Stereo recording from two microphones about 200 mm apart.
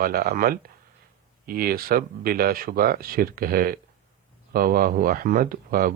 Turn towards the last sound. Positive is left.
turn(degrees=-45)  # may be behind; listen again after turning